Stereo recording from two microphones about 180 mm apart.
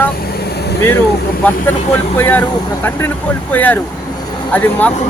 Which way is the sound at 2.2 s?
10° left (ahead or behind).